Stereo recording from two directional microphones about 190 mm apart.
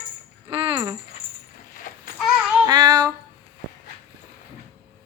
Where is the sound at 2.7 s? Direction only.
20° right (ahead or behind).